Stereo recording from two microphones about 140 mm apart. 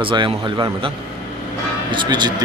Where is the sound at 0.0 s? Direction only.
35° right (ahead or behind).